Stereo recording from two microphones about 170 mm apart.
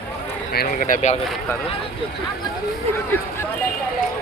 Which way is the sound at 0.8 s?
45° left (ahead or behind).